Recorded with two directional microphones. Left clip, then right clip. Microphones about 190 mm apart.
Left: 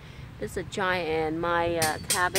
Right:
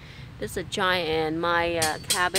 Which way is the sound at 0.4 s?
15° right (ahead or behind).